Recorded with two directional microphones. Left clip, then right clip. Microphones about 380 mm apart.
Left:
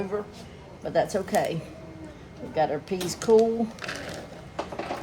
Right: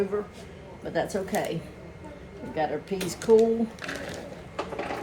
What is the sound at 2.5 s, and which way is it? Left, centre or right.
Speech, centre.